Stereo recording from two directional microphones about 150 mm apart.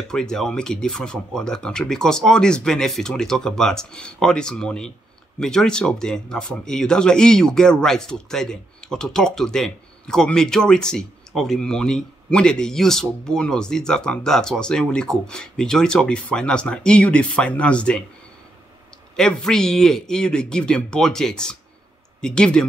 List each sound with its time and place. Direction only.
0.1 s speech: 5° left (ahead or behind)
19.1 s speech: 5° left (ahead or behind)